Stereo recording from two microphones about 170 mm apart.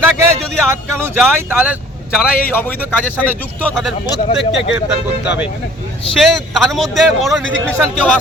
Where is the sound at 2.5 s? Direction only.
10° left (ahead or behind).